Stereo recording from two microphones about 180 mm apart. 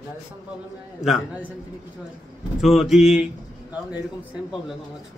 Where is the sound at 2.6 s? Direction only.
Centre (ahead or behind).